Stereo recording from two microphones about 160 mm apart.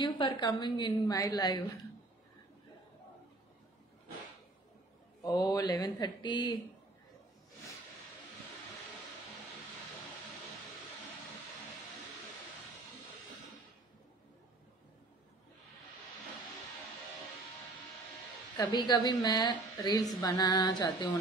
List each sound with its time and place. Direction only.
0.0 s a woman's voice: 25° left (ahead or behind)
5.2 s a woman's voice: 25° left (ahead or behind)
18.6 s a woman's voice: 25° left (ahead or behind)